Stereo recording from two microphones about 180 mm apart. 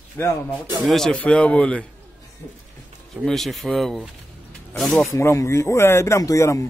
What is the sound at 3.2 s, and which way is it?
Speech, centre (ahead or behind).